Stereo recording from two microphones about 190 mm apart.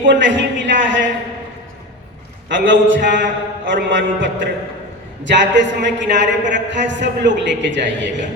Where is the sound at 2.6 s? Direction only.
80° right.